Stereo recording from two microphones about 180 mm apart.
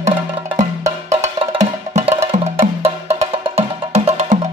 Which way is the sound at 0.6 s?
40° right (ahead or behind).